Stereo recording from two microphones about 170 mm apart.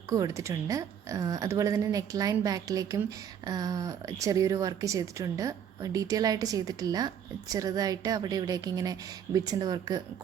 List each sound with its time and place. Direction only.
0.1 s a woman's voice: 20° right (ahead or behind)